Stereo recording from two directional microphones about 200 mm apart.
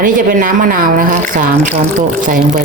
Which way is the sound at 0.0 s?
45° right (ahead or behind).